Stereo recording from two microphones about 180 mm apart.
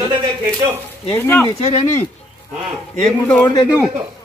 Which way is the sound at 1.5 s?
35° left (ahead or behind).